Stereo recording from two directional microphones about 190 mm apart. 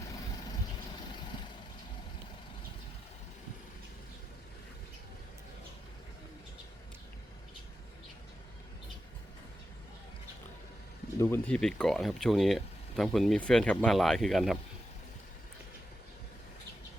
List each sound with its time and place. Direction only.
11.2 s speech: 10° left (ahead or behind)